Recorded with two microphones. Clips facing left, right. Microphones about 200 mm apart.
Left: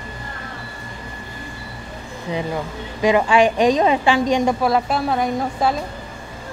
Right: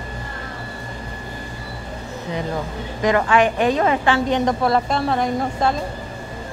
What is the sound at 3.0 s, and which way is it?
A woman's voice, 15° left (ahead or behind).